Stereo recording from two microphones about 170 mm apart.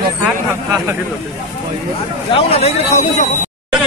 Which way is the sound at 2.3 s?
35° left (ahead or behind).